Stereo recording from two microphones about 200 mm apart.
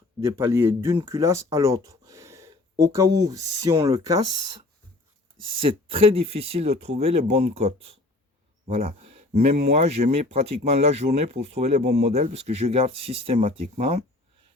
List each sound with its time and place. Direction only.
0.2 s speech: 15° right (ahead or behind)
5.5 s speech: 25° right (ahead or behind)